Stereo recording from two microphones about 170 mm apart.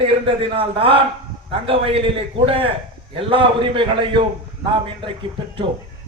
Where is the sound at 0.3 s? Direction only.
35° right (ahead or behind).